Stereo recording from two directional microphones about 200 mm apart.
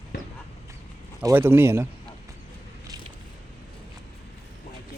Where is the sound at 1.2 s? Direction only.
15° right (ahead or behind).